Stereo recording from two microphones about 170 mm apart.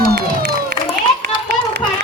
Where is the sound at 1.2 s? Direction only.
70° right (ahead or behind).